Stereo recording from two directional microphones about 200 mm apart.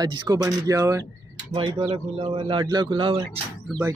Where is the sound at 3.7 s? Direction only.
Centre (ahead or behind).